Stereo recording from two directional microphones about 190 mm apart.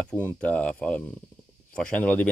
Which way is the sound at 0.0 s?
10° left (ahead or behind).